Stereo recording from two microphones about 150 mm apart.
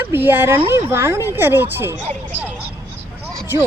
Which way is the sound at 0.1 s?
15° right (ahead or behind).